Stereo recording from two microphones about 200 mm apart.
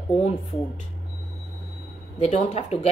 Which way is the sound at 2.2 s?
30° left (ahead or behind).